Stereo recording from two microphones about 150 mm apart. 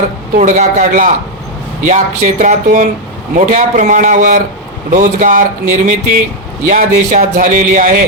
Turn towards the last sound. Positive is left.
turn(degrees=-60)  # may be behind; listen again after turning